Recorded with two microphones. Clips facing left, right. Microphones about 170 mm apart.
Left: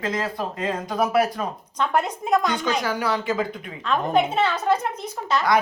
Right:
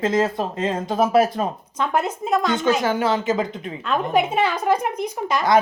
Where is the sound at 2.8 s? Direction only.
25° right (ahead or behind).